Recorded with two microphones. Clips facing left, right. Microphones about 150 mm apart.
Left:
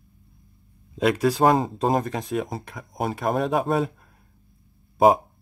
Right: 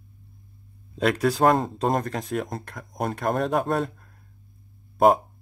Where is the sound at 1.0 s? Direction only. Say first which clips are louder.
Left 1 dB; centre (ahead or behind).